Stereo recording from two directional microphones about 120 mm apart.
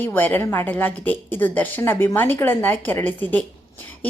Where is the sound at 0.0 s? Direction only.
15° left (ahead or behind).